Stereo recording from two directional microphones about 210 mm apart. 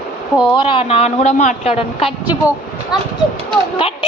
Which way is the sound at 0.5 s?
25° left (ahead or behind).